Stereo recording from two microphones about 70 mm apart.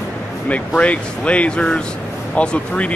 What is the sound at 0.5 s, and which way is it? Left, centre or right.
Speech, centre.